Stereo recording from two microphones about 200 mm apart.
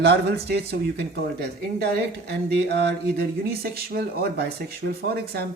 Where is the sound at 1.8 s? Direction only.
55° right (ahead or behind).